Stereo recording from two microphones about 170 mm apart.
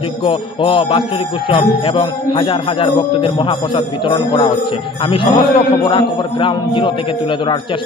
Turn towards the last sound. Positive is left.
turn(degrees=30)  # may be behind; listen again after turning